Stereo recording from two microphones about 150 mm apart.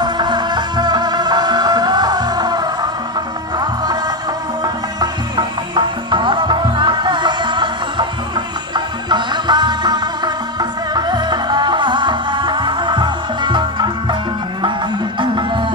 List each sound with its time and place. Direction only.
0.0 s music: 30° right (ahead or behind)
5.0 s music: 30° right (ahead or behind)
15.1 s music: 30° right (ahead or behind)